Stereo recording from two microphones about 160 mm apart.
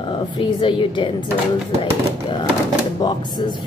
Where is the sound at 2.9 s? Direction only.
25° left (ahead or behind).